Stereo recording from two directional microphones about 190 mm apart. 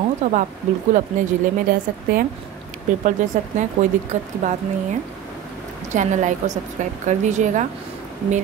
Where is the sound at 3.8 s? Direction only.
40° right (ahead or behind).